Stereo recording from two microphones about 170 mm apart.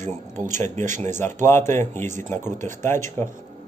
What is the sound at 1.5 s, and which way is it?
A man's voice, 15° left (ahead or behind).